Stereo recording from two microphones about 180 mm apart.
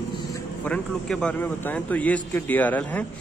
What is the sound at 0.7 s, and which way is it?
A man's voice, 5° left (ahead or behind).